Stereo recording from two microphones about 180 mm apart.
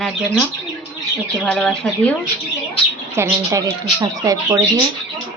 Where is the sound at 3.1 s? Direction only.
15° right (ahead or behind).